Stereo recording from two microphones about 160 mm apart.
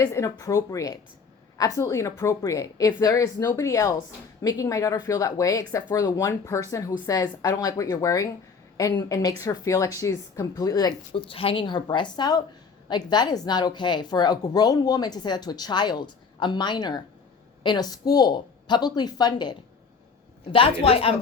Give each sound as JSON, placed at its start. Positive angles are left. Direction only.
{"t": 0.0, "sound": "a woman's voice", "side_deg": 20}